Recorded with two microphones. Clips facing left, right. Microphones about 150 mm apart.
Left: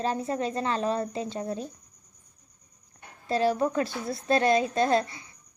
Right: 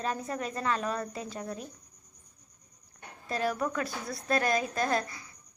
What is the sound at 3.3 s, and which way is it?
A woman's voice, 30° left (ahead or behind).